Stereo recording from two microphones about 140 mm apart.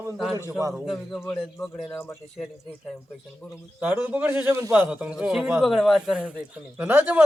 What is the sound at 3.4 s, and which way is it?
Speech, 5° left (ahead or behind).